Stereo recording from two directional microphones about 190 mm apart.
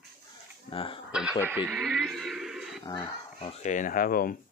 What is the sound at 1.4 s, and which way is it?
Speech, 10° right (ahead or behind).